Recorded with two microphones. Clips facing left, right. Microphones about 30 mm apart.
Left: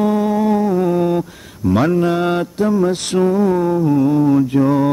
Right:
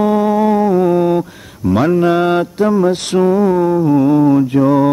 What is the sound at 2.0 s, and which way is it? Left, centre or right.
Mantra, centre.